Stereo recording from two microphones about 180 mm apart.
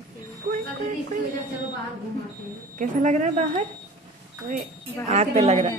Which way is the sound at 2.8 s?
45° right (ahead or behind).